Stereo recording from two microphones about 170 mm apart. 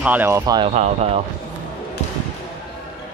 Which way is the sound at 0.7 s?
35° right (ahead or behind).